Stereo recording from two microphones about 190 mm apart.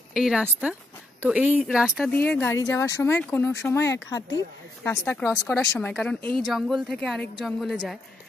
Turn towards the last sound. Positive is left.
turn(degrees=0)  # may be behind; listen again after turning